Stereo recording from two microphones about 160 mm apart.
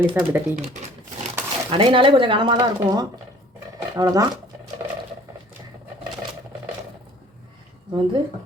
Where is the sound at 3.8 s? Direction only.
20° right (ahead or behind).